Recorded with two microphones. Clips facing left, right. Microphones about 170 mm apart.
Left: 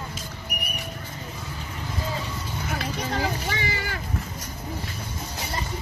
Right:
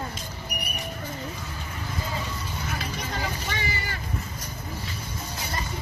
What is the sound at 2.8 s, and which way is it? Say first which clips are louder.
Vehicle: left 8 dB; 90° left.